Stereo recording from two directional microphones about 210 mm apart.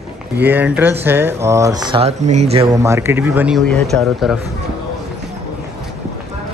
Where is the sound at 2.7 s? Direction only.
15° right (ahead or behind).